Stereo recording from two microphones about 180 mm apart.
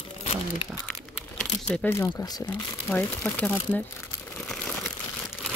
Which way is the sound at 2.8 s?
5° left (ahead or behind).